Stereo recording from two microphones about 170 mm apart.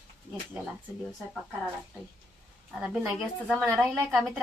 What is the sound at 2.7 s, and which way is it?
A woman's voice, 5° right (ahead or behind).